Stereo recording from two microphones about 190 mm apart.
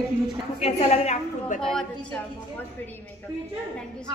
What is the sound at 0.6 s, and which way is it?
A woman's voice, 35° left (ahead or behind).